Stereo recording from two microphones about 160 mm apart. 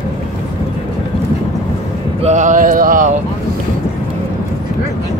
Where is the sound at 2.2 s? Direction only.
50° right (ahead or behind).